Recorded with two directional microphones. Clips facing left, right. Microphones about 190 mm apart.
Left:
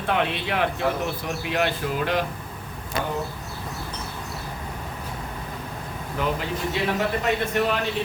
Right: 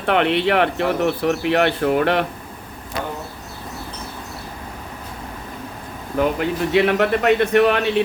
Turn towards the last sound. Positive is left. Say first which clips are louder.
# right 8 dB
turn(degrees=-65)  # may be behind; listen again after turning